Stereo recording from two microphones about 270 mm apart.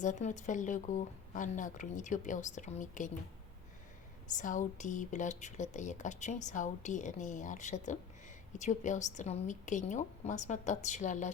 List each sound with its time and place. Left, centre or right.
0.0 s speech: left
4.4 s speech: left